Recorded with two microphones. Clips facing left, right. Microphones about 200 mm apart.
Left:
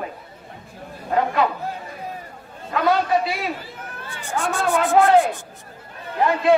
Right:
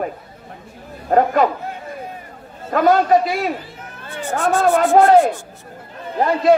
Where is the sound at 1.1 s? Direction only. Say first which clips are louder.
Right 5 dB; 45° right (ahead or behind).